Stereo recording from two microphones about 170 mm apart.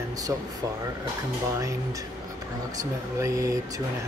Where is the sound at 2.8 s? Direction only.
20° right (ahead or behind).